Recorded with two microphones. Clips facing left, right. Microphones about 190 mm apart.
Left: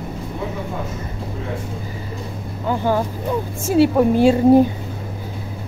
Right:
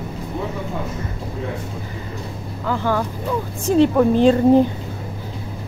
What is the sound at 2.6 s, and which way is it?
A woman's voice, 20° left (ahead or behind).